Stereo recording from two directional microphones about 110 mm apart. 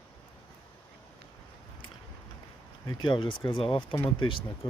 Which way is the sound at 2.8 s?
45° left (ahead or behind).